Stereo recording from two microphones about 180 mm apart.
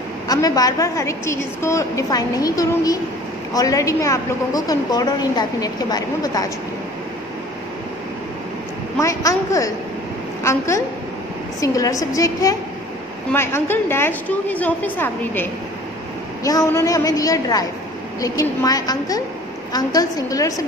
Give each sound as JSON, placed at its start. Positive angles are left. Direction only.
{"t": 0.3, "sound": "a woman's voice", "side_deg": 20}
{"t": 9.0, "sound": "a woman's voice", "side_deg": 20}
{"t": 16.4, "sound": "a woman's voice", "side_deg": 20}